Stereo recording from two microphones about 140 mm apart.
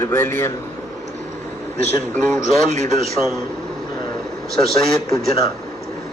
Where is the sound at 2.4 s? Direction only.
55° right (ahead or behind).